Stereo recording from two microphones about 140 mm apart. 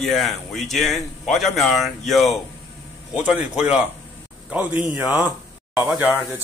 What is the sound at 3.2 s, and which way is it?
A man's voice, 10° right (ahead or behind).